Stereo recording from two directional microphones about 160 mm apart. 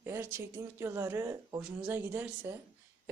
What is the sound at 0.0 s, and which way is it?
Speech, 15° right (ahead or behind).